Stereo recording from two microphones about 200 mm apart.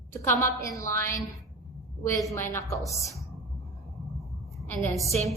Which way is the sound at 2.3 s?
15° left (ahead or behind).